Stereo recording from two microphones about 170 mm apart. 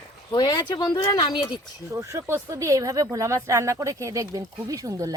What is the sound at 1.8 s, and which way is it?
Speech, 15° right (ahead or behind).